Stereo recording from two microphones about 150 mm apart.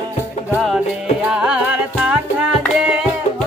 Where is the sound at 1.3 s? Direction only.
5° right (ahead or behind).